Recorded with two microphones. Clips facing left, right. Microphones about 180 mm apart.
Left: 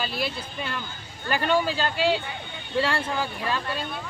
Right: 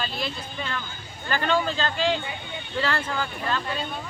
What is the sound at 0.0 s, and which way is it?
Speech, 5° left (ahead or behind).